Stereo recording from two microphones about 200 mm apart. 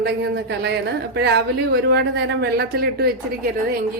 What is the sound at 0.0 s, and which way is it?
A woman's voice, 55° right (ahead or behind).